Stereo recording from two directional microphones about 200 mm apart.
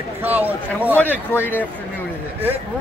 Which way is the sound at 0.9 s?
10° left (ahead or behind).